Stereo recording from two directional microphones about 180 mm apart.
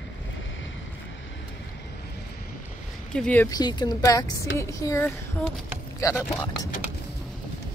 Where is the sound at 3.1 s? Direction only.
5° left (ahead or behind).